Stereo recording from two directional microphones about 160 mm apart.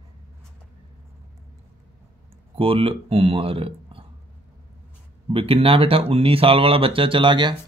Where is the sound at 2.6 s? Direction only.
35° right (ahead or behind).